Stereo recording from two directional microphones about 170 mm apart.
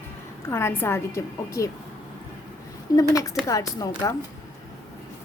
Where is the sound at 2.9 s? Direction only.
20° left (ahead or behind).